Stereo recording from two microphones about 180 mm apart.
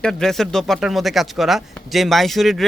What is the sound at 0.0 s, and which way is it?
Speech, 5° left (ahead or behind).